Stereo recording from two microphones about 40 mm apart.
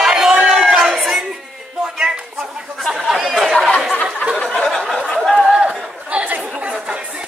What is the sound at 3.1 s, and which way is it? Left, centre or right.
Chatter, centre.